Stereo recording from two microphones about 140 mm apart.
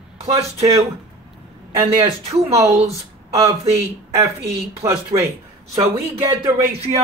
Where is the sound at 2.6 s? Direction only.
50° right (ahead or behind).